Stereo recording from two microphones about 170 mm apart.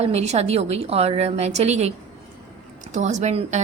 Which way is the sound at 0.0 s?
40° right (ahead or behind).